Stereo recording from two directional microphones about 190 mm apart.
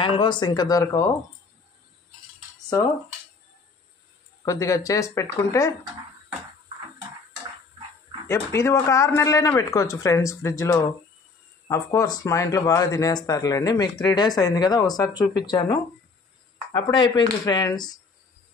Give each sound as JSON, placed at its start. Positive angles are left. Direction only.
{"t": 0.0, "sound": "speech", "side_deg": 25}
{"t": 4.5, "sound": "speech", "side_deg": 15}
{"t": 8.3, "sound": "speech", "side_deg": 15}